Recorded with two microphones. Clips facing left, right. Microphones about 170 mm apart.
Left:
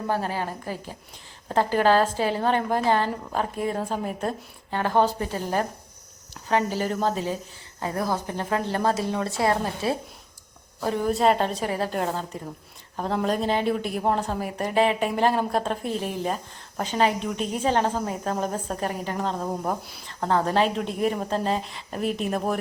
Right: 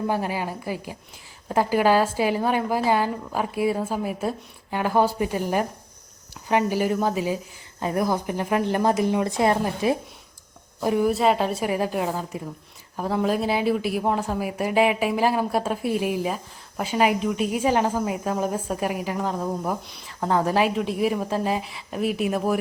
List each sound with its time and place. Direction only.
0.1 s a woman's voice: 15° right (ahead or behind)